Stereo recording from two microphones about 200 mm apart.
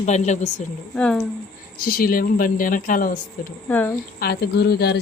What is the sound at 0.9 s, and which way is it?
Speech, 5° left (ahead or behind).